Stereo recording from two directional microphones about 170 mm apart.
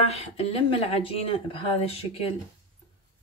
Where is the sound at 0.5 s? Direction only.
35° left (ahead or behind).